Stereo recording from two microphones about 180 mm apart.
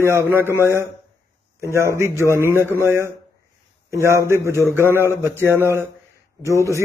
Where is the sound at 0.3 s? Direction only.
10° right (ahead or behind).